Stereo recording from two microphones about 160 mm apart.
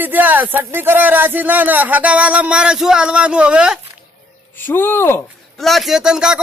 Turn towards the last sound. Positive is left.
turn(degrees=-5)  # may be behind; listen again after turning